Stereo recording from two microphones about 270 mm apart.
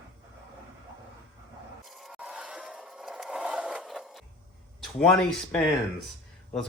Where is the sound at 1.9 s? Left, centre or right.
Centre.